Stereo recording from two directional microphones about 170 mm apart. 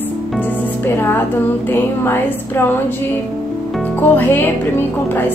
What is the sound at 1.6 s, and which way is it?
Speech, 15° left (ahead or behind).